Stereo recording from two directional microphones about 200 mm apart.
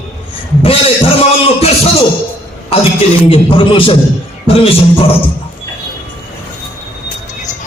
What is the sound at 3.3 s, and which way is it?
Speech, 25° left (ahead or behind).